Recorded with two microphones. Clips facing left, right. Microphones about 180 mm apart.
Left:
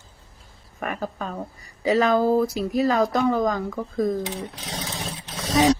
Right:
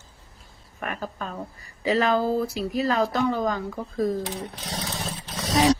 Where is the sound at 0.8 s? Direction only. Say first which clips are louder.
Left 3 dB; 40° left (ahead or behind).